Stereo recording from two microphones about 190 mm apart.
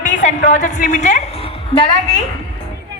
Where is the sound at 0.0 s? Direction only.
40° left (ahead or behind).